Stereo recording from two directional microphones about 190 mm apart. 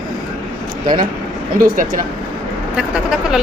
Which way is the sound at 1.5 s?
45° right (ahead or behind).